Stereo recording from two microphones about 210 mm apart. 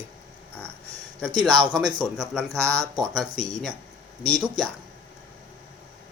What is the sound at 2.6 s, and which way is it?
Speech, 15° right (ahead or behind).